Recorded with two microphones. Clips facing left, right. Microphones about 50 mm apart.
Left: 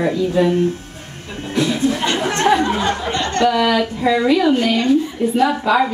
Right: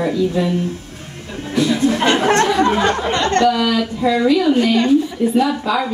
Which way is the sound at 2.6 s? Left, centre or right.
Right.